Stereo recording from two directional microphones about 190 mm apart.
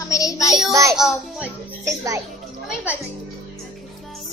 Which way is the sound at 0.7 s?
15° right (ahead or behind).